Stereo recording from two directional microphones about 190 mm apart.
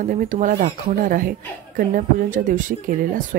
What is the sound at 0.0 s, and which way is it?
Speech, 45° right (ahead or behind).